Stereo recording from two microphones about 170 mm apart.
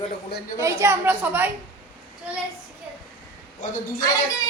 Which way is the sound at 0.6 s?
15° right (ahead or behind).